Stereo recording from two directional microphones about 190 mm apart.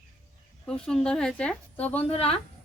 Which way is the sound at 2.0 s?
30° left (ahead or behind).